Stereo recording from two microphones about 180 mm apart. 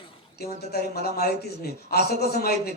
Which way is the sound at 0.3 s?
60° left (ahead or behind).